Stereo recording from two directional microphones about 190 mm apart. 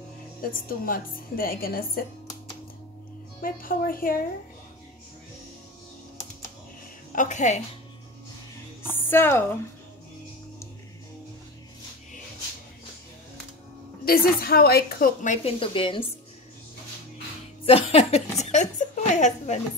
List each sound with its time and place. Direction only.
0.4 s a woman's voice: 50° left (ahead or behind)
3.4 s a woman's voice: 50° left (ahead or behind)
7.1 s a woman's voice: 40° left (ahead or behind)
8.8 s speech: 10° left (ahead or behind)
14.0 s a woman's voice: 50° left (ahead or behind); by 16.1 s 25° left (ahead or behind)
17.6 s a woman's voice: 30° left (ahead or behind)